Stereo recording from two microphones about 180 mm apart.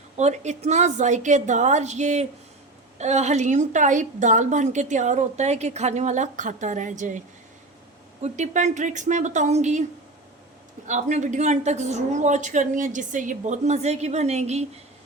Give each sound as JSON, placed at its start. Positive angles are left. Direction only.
{"t": 0.2, "sound": "a woman's voice", "side_deg": -40}
{"t": 8.2, "sound": "a woman's voice", "side_deg": -40}
{"t": 10.8, "sound": "a woman's voice", "side_deg": -40}